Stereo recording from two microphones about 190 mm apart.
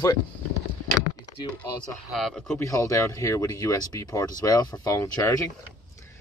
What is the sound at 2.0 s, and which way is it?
Speech, centre (ahead or behind).